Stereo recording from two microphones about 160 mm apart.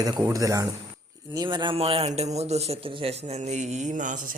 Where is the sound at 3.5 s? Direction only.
50° right (ahead or behind).